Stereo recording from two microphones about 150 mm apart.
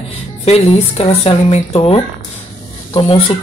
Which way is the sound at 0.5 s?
45° left (ahead or behind).